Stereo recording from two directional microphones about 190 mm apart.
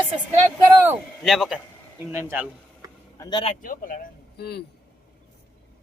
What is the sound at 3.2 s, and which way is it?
Speech, 25° left (ahead or behind).